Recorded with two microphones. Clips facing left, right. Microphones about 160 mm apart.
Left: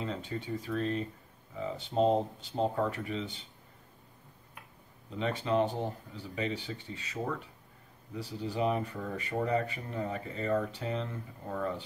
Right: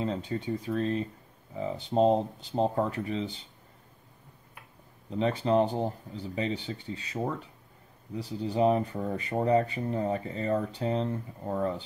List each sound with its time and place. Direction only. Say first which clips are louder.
0.0 s speech: right 5 dB; 35° right (ahead or behind)
5.2 s speech: right 4 dB; 35° right (ahead or behind)
8.4 s speech: right 6 dB; 35° right (ahead or behind)